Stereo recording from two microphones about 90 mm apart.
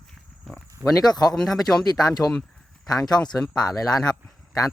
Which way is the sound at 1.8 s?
45° left (ahead or behind).